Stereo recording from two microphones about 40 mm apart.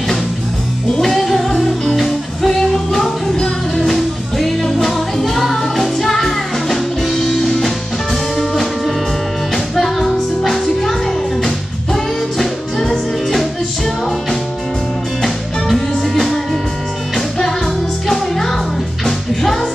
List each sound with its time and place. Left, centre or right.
1.0 s music: centre
3.3 s music: centre
3.8 s music: centre
15.2 s music: centre